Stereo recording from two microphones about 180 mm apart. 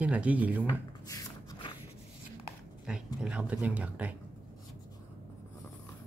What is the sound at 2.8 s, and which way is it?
Speech, 5° right (ahead or behind).